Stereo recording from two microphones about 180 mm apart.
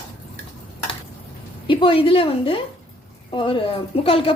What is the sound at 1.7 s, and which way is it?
A woman's voice, 30° left (ahead or behind).